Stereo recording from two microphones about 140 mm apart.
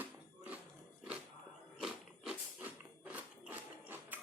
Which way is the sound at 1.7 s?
5° right (ahead or behind).